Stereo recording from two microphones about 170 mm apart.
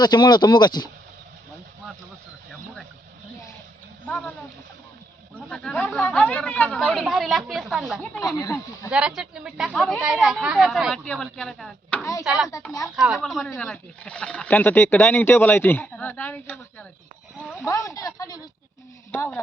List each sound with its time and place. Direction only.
0.0 s speech: 25° left (ahead or behind)
4.0 s a sound: 10° left (ahead or behind)
5.5 s speech: 5° left (ahead or behind)
8.4 s speech: 20° left (ahead or behind)
8.9 s speech: 5° right (ahead or behind)
17.3 s speech: 5° right (ahead or behind)
17.6 s speech: 20° left (ahead or behind)